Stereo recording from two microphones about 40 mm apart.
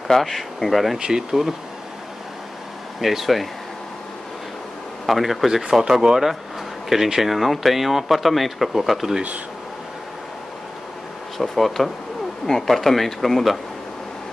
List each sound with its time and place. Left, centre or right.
0.1 s speech: centre
0.9 s speech: centre
3.0 s speech: centre
5.0 s speech: centre
11.3 s speech: centre